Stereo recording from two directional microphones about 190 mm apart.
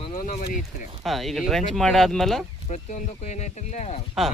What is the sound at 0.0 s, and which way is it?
Speech, 40° left (ahead or behind).